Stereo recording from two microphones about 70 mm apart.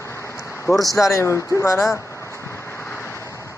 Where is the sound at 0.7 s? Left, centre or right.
Left.